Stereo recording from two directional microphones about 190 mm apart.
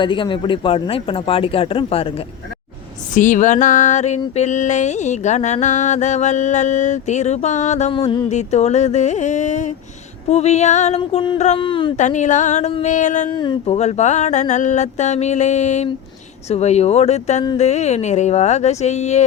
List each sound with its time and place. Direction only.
0.0 s speech: 25° left (ahead or behind)
3.2 s music: 40° left (ahead or behind); by 8.3 s 25° left (ahead or behind)
8.3 s music: 35° left (ahead or behind)
11.9 s music: 40° left (ahead or behind)
13.3 s speech: 25° left (ahead or behind)
13.7 s music: 35° left (ahead or behind)